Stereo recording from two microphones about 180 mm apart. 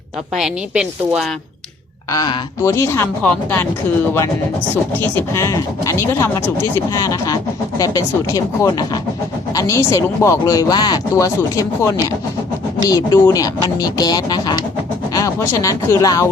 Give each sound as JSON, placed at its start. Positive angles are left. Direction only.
{"t": 0.3, "sound": "a woman's voice", "side_deg": -5}
{"t": 2.0, "sound": "speech", "side_deg": 20}
{"t": 4.9, "sound": "speech", "side_deg": 10}